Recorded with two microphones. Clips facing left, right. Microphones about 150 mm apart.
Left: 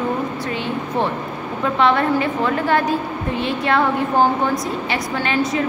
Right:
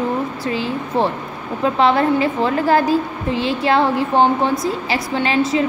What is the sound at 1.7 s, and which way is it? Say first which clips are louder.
A woman's voice: right 1 dB; 30° right (ahead or behind).